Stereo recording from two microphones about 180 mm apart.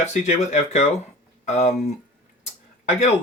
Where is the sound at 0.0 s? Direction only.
40° left (ahead or behind).